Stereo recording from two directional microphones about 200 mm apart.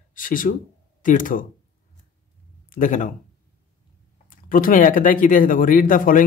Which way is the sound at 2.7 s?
40° left (ahead or behind).